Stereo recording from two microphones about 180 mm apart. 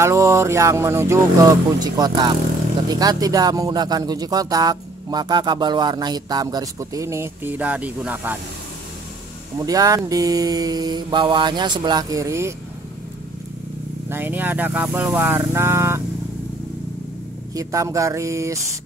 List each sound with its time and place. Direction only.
0.0 s speech: 15° right (ahead or behind)
9.7 s speech: 20° right (ahead or behind)
14.0 s speech: 10° right (ahead or behind)
17.6 s speech: 15° right (ahead or behind)